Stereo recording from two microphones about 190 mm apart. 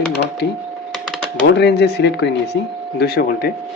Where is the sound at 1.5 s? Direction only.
65° left (ahead or behind).